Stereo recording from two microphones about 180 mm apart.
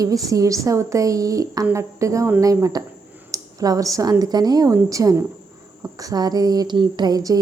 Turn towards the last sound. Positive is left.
turn(degrees=-20)  # may be behind; listen again after turning